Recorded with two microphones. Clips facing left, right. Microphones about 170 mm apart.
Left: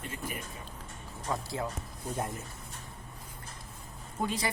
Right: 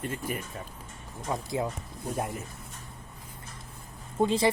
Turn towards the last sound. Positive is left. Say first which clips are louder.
# right 9 dB
turn(degrees=-30)  # may be behind; listen again after turning